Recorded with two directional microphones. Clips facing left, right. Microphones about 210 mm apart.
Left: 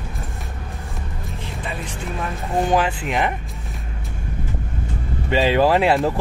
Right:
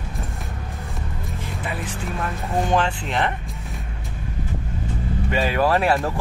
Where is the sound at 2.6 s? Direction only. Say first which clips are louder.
Left 3 dB; 5° left (ahead or behind).